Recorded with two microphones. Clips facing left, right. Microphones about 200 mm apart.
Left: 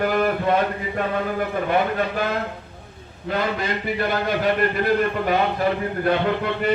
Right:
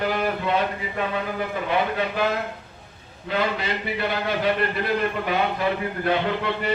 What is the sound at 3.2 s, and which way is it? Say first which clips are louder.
A man's voice: left 1 dB; 45° left (ahead or behind).